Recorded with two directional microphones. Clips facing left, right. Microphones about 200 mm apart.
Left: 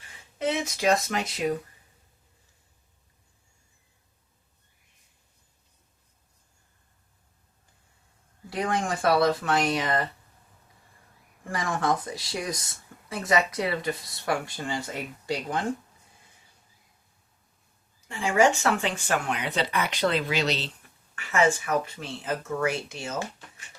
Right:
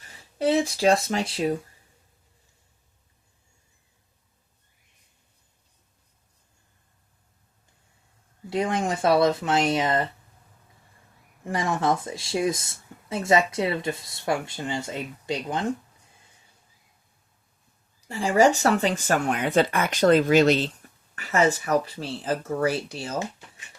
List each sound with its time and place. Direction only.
0.0 s speech: 35° right (ahead or behind)
8.4 s speech: 25° right (ahead or behind)
11.4 s speech: 20° right (ahead or behind)
18.1 s speech: 35° right (ahead or behind)
21.2 s speech: 35° right (ahead or behind)